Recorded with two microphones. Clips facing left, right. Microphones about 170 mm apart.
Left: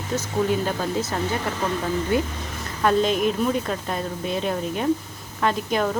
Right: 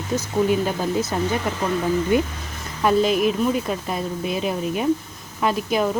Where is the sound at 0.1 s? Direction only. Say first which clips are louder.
Right 2 dB; 15° right (ahead or behind).